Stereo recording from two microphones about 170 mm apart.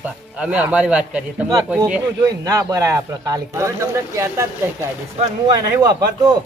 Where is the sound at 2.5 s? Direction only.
20° right (ahead or behind).